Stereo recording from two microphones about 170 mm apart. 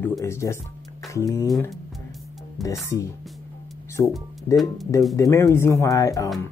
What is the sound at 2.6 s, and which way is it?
Speech, 20° left (ahead or behind).